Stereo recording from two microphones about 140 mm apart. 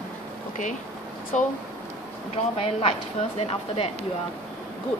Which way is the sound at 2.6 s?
45° left (ahead or behind).